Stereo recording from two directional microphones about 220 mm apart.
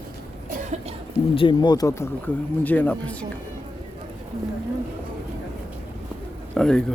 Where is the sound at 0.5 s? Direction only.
30° right (ahead or behind).